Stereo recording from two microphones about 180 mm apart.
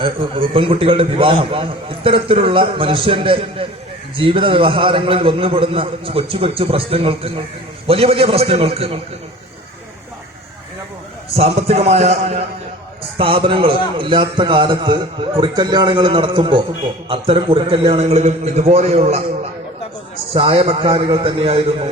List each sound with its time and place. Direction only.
0.0 s a man's voice: 30° right (ahead or behind)
11.3 s a man's voice: 35° right (ahead or behind)
20.3 s a man's voice: 30° right (ahead or behind)